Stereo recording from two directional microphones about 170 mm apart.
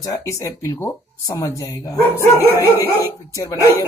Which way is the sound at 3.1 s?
15° left (ahead or behind).